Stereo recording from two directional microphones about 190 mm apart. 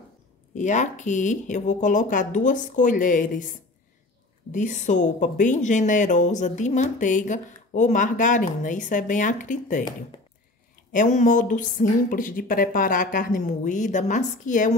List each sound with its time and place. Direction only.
0.6 s speech: 40° left (ahead or behind)
10.9 s speech: 40° left (ahead or behind)